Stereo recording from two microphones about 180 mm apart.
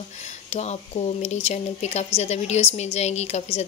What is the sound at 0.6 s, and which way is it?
Speech, 35° left (ahead or behind).